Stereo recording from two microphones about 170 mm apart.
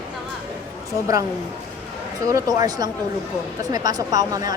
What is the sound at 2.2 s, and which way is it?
A woman's voice, 20° right (ahead or behind).